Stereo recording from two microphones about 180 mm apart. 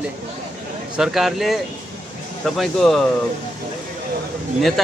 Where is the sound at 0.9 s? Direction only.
Centre (ahead or behind).